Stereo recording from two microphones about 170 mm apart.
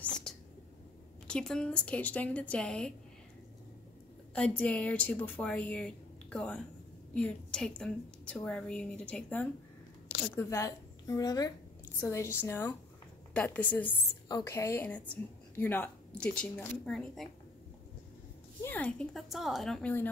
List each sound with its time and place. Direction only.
0.0 s whispering: 5° left (ahead or behind)
1.2 s a woman's voice: 5° left (ahead or behind)
4.4 s a woman's voice: 5° left (ahead or behind)
18.6 s a woman's voice: 10° left (ahead or behind)